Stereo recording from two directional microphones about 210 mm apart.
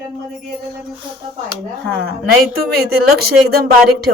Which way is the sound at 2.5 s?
45° right (ahead or behind).